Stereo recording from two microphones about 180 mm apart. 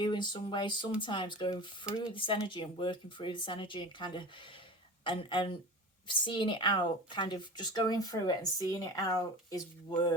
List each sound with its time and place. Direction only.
0.0 s speech: 25° left (ahead or behind)